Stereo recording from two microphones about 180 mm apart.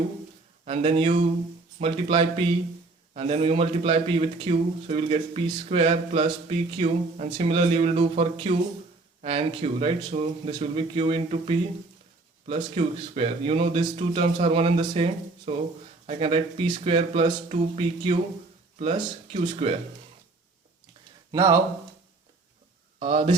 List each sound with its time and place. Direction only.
0.6 s a man's voice: 35° right (ahead or behind)
21.3 s speech: 15° right (ahead or behind)
23.0 s speech: 30° right (ahead or behind)